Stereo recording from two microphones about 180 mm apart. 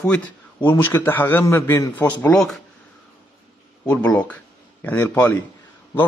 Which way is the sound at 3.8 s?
5° left (ahead or behind).